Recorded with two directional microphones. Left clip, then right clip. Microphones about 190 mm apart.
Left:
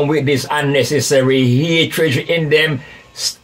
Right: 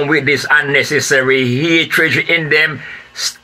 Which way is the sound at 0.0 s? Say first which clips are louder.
Right 2 dB; 15° left (ahead or behind).